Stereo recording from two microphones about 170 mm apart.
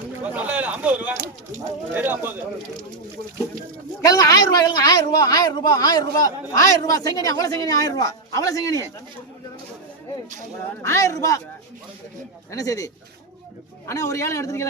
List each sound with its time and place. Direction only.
0.3 s speech: 10° right (ahead or behind)
4.0 s a woman's voice: 20° left (ahead or behind)
10.8 s a woman's voice: 20° left (ahead or behind)
12.5 s a woman's voice: 20° left (ahead or behind)